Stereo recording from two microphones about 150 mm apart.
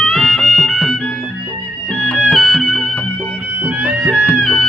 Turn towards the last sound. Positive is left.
turn(degrees=5)  # may be behind; listen again after turning